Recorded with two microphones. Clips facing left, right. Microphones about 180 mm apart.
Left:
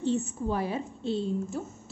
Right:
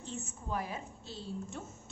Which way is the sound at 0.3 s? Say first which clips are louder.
Left 9 dB; 30° left (ahead or behind).